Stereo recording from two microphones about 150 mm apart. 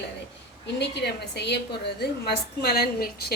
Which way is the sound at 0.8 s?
90° left.